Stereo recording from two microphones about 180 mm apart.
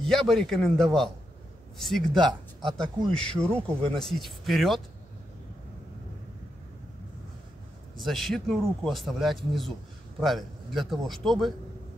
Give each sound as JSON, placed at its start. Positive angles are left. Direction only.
{"t": 0.0, "sound": "a man's voice", "side_deg": 0}
{"t": 2.1, "sound": "speech", "side_deg": -25}
{"t": 3.2, "sound": "a man's voice", "side_deg": 5}
{"t": 8.0, "sound": "a man's voice", "side_deg": 0}